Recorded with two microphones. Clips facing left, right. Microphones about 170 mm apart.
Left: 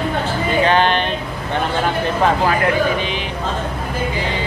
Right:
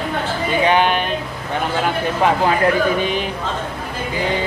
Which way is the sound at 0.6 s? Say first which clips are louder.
Right 1 dB; 10° right (ahead or behind).